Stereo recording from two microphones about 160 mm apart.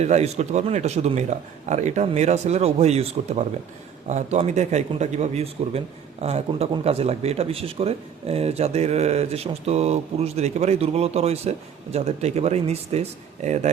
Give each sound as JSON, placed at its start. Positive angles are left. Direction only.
{"t": 0.0, "sound": "a man's voice", "side_deg": -45}